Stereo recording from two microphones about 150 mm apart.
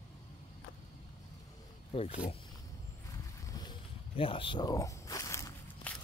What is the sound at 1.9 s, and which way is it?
Speech, 45° left (ahead or behind).